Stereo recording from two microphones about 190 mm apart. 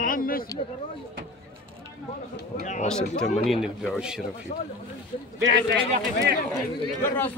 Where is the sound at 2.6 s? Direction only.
40° left (ahead or behind).